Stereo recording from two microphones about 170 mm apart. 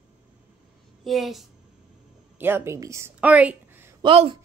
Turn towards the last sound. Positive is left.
turn(degrees=-30)  # may be behind; listen again after turning